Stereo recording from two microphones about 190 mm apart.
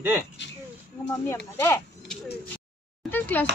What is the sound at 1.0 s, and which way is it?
Speech, 15° left (ahead or behind).